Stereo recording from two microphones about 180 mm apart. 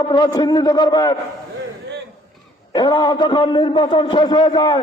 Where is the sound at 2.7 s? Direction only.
25° left (ahead or behind).